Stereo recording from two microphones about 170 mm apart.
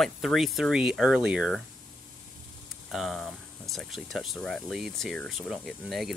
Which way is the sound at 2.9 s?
Centre (ahead or behind).